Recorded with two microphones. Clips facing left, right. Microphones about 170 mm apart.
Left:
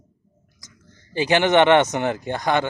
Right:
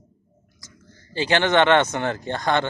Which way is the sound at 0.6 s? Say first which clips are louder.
Right 2 dB; 20° left (ahead or behind).